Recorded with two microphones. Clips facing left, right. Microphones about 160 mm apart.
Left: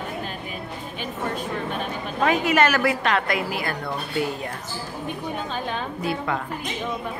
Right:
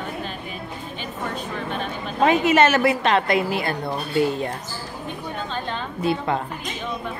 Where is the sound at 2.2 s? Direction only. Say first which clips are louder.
Right 3 dB; 25° right (ahead or behind).